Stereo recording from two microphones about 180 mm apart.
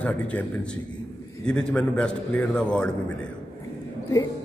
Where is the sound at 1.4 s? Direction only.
5° left (ahead or behind).